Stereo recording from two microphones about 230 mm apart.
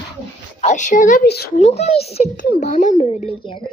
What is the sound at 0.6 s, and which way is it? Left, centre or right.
Speech, left.